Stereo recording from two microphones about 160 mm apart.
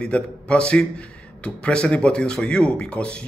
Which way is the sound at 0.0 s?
5° left (ahead or behind).